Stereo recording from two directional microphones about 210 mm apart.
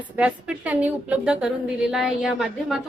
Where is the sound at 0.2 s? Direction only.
5° right (ahead or behind).